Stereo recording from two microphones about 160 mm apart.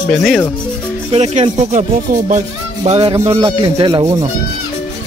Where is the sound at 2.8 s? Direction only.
35° right (ahead or behind).